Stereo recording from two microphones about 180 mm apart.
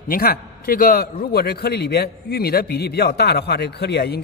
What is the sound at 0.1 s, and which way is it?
A man's voice, 55° left (ahead or behind).